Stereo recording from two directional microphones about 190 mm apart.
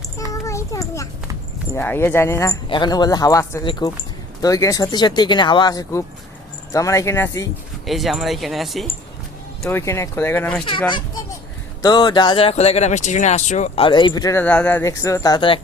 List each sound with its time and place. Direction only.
0.3 s a sound: 15° left (ahead or behind)
1.7 s speech: 10° left (ahead or behind)
7.9 s speech: centre (ahead or behind)
9.6 s speech: 15° left (ahead or behind)
10.7 s speech: 25° left (ahead or behind)
14.4 s speech: 5° left (ahead or behind); by 15.6 s 25° left (ahead or behind)